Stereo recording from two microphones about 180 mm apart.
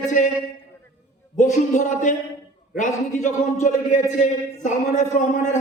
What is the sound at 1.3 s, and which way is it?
A man's voice, 45° left (ahead or behind).